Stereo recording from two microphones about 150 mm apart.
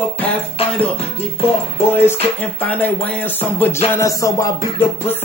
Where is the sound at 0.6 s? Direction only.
40° left (ahead or behind).